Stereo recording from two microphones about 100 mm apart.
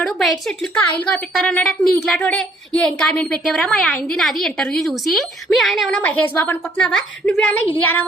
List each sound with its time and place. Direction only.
0.0 s a woman's voice: centre (ahead or behind)
0.7 s a woman's voice: 15° left (ahead or behind)
1.3 s a woman's voice: centre (ahead or behind)
6.0 s a woman's voice: 15° left (ahead or behind)